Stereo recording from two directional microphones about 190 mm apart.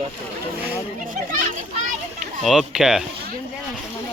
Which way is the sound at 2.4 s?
5° right (ahead or behind).